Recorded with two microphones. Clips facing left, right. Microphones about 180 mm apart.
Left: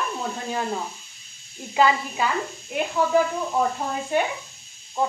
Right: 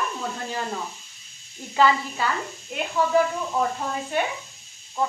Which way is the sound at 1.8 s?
15° left (ahead or behind).